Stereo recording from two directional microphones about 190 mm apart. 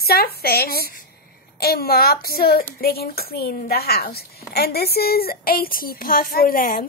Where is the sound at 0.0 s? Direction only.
55° left (ahead or behind).